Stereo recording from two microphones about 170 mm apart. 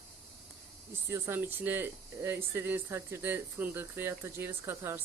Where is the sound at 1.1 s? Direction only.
15° right (ahead or behind).